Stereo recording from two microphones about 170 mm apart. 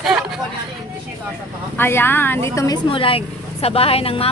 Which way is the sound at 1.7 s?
15° left (ahead or behind).